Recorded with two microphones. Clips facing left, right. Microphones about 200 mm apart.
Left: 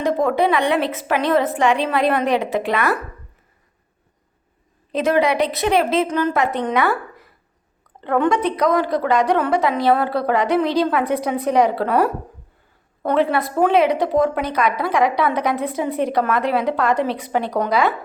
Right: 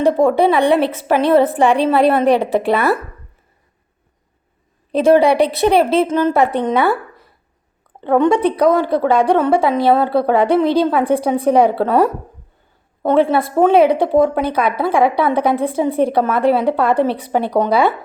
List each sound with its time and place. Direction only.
0.0 s a woman's voice: 30° right (ahead or behind)
4.9 s a woman's voice: 30° right (ahead or behind)
13.3 s a woman's voice: 30° right (ahead or behind)